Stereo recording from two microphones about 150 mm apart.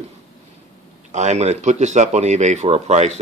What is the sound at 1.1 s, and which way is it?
A man's voice, 50° right (ahead or behind).